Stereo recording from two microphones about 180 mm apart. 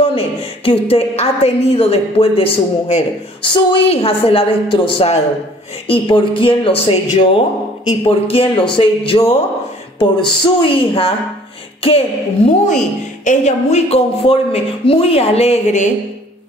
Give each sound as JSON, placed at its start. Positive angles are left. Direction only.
{"t": 0.7, "sound": "speech", "side_deg": 35}
{"t": 12.6, "sound": "speech", "side_deg": 45}